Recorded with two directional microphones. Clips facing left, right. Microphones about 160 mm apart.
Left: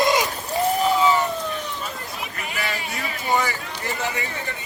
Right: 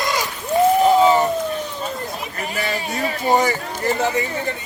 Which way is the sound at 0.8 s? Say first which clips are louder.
Right 4 dB; 40° right (ahead or behind).